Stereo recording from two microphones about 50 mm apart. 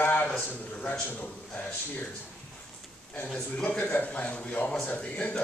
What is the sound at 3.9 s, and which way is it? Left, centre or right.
A man's voice, left.